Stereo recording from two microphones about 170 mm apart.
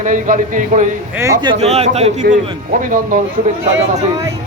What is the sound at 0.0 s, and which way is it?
Speech, 50° right (ahead or behind).